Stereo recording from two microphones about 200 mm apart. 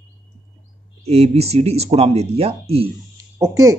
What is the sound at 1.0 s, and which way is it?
Speech, 30° right (ahead or behind).